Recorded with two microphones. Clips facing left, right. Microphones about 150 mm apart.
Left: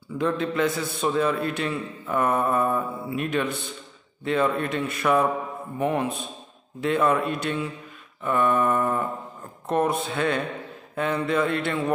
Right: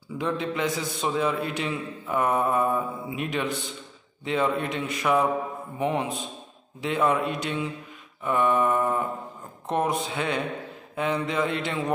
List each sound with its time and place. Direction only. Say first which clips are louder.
0.2 s speech: left 4 dB; 15° right (ahead or behind)